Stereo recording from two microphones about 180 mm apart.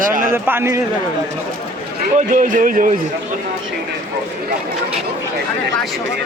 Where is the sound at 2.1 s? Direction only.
45° right (ahead or behind).